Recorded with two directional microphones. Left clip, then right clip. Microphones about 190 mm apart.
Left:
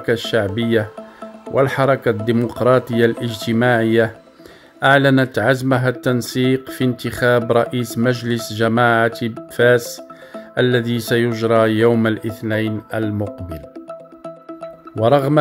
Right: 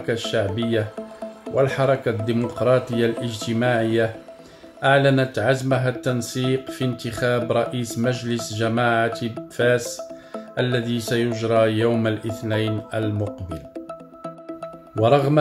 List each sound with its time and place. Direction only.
0.0 s speech: 45° left (ahead or behind)
15.0 s speech: 40° left (ahead or behind)